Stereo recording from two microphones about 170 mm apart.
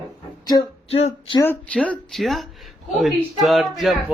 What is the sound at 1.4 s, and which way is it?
Speech, 10° left (ahead or behind).